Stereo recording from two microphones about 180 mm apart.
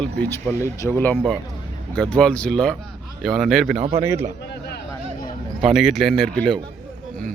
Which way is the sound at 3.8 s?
35° right (ahead or behind).